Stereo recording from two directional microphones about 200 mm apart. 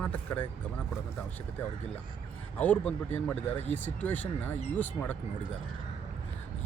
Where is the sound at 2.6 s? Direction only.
5° left (ahead or behind).